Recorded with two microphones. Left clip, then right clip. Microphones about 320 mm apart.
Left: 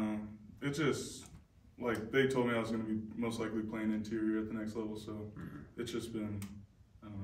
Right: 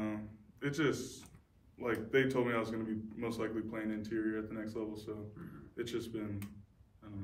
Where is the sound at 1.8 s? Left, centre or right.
Centre.